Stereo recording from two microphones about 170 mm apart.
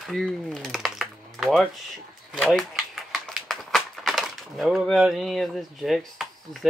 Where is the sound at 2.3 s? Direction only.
5° left (ahead or behind).